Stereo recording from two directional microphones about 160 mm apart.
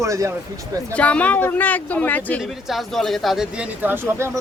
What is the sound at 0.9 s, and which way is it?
Speech, 10° left (ahead or behind).